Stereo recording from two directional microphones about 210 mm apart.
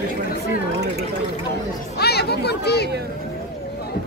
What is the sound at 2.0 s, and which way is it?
Chatter, 50° left (ahead or behind).